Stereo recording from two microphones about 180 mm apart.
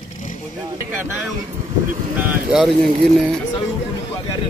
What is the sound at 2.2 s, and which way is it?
Speech, 5° right (ahead or behind).